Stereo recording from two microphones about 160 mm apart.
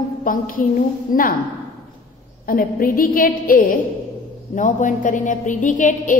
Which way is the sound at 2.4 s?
60° left (ahead or behind).